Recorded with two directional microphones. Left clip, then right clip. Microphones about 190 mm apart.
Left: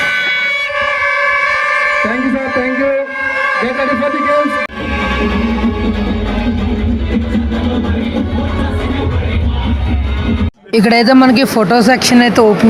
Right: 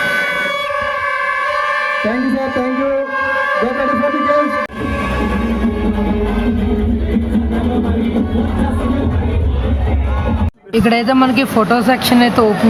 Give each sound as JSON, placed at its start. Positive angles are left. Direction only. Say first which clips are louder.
{"t": 0.0, "sound": "music", "louder": "left 2 dB", "side_deg": -55}
{"t": 10.8, "sound": "a man's voice", "louder": "left 4 dB", "side_deg": 25}